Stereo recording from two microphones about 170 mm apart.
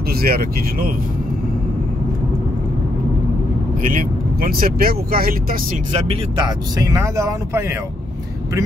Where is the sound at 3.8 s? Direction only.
55° right (ahead or behind).